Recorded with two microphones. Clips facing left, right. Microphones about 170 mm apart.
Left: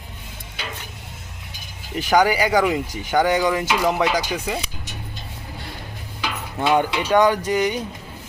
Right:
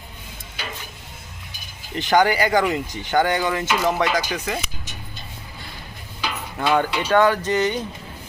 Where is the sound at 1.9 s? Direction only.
10° left (ahead or behind).